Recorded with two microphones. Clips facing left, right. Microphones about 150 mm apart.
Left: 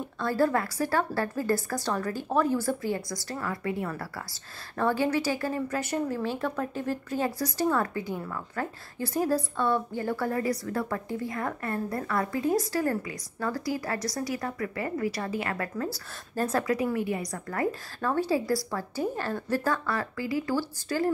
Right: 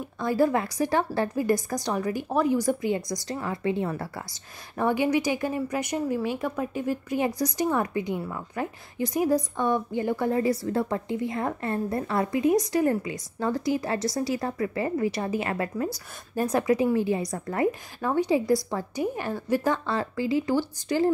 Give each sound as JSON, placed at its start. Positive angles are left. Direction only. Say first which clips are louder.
{"t": 0.2, "sound": "a woman's voice", "louder": "right 2 dB", "side_deg": -15}